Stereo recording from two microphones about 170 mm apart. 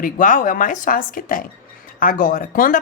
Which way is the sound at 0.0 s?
50° left (ahead or behind).